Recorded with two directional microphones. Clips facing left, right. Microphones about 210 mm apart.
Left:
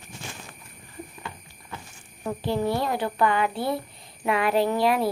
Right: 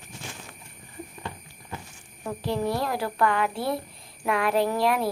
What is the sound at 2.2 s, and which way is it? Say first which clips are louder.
Speech: left 2 dB; centre (ahead or behind).